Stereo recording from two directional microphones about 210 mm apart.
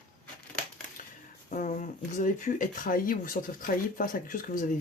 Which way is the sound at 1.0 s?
40° left (ahead or behind).